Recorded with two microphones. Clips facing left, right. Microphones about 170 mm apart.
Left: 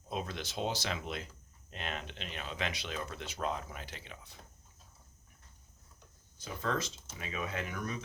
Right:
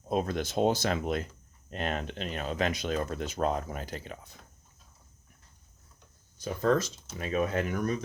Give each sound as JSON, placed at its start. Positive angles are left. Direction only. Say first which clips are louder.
{"t": 0.1, "sound": "speech", "louder": "right 9 dB", "side_deg": -50}
{"t": 6.4, "sound": "speech", "louder": "right 9 dB", "side_deg": -40}